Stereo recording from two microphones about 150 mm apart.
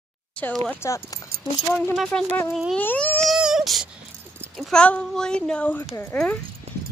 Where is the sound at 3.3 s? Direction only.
5° right (ahead or behind).